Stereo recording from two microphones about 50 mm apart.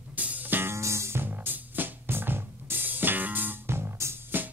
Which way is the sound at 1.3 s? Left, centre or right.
Right.